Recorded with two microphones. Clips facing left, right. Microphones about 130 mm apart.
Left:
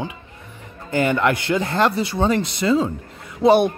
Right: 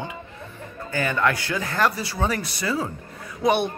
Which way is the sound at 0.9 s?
20° left (ahead or behind).